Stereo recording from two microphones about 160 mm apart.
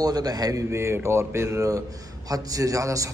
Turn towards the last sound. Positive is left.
turn(degrees=-20)  # may be behind; listen again after turning